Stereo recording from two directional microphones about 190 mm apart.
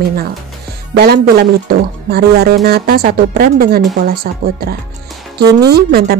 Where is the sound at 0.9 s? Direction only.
55° right (ahead or behind).